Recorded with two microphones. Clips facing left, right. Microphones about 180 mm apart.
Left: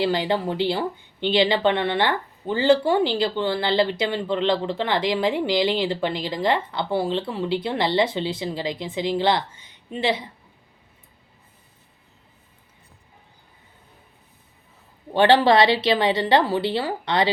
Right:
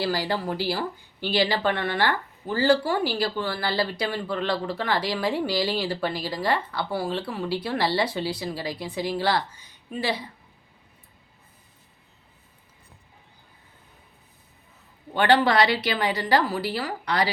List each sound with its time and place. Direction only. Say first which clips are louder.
0.0 s speech: left 4 dB; 20° left (ahead or behind)
15.1 s speech: left 4 dB; 25° left (ahead or behind)